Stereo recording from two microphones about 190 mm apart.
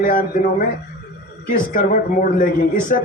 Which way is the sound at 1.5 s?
45° left (ahead or behind).